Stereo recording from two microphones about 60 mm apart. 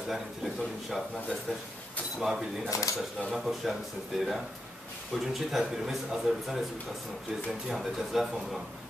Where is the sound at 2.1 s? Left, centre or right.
Centre.